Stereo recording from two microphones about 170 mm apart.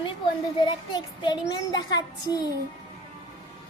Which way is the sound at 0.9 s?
25° left (ahead or behind).